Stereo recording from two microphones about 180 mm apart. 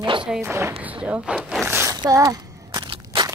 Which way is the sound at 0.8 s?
10° right (ahead or behind).